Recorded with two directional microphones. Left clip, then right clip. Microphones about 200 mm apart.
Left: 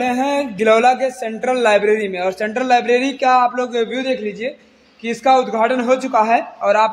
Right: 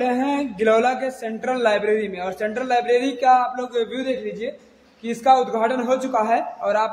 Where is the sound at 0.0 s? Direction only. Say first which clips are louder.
Left 4 dB; 35° left (ahead or behind).